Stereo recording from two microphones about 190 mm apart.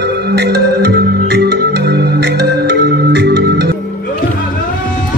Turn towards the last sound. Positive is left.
turn(degrees=-60)  # may be behind; listen again after turning